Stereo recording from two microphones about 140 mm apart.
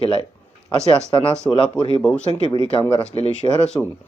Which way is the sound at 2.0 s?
10° left (ahead or behind).